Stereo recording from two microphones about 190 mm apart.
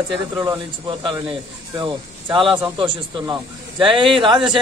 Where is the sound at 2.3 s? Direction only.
25° right (ahead or behind).